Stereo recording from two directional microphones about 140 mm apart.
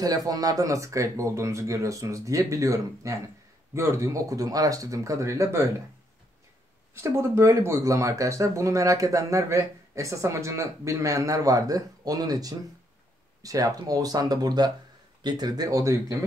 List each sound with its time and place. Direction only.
0.0 s speech: 25° right (ahead or behind)
6.9 s speech: 20° right (ahead or behind)